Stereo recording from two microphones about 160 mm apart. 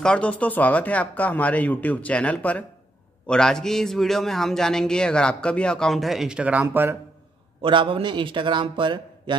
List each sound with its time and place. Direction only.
0.0 s a man's voice: 5° left (ahead or behind); by 7.0 s 10° right (ahead or behind)
7.6 s a man's voice: 30° right (ahead or behind)